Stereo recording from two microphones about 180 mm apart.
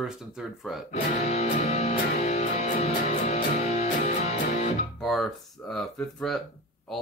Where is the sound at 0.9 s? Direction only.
35° left (ahead or behind).